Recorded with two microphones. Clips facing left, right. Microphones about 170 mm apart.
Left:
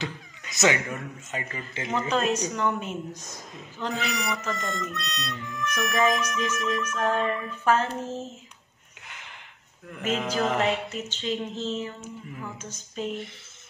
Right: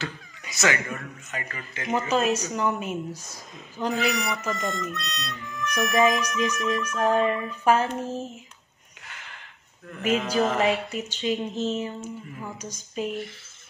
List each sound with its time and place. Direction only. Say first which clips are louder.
0.0 s speech: even; 20° left (ahead or behind)
1.9 s speech: right 2 dB; 5° right (ahead or behind)
6.9 s music: right 5 dB; 5° right (ahead or behind)
9.0 s a sound: right 1 dB; 20° left (ahead or behind)
10.0 s music: right 3 dB; 10° right (ahead or behind)